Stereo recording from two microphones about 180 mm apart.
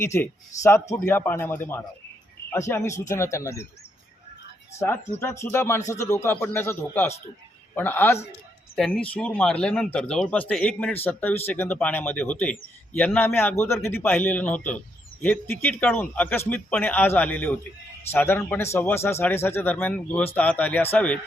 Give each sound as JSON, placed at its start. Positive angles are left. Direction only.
{"t": 0.0, "sound": "a man's voice", "side_deg": 15}
{"t": 5.2, "sound": "a man's voice", "side_deg": 15}
{"t": 8.7, "sound": "a man's voice", "side_deg": 0}